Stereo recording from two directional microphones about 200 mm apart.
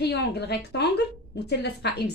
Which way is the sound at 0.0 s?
55° left (ahead or behind).